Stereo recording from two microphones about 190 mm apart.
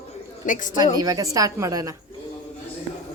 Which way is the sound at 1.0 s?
20° right (ahead or behind).